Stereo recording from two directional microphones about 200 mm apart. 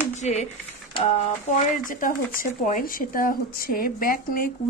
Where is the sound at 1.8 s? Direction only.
40° left (ahead or behind).